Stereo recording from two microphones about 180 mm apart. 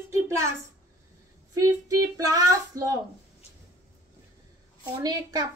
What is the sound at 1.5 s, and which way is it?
Speech, 20° right (ahead or behind).